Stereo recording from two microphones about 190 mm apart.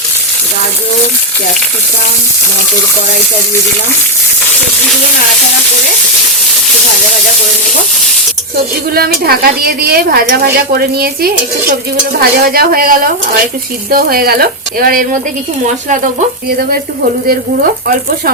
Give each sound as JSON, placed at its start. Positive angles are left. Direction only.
{"t": 8.9, "sound": "a woman's voice", "side_deg": -50}
{"t": 17.2, "sound": "a woman's voice", "side_deg": -50}